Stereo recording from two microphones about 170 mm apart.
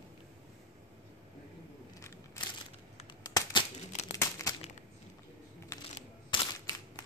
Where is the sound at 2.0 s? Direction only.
15° left (ahead or behind).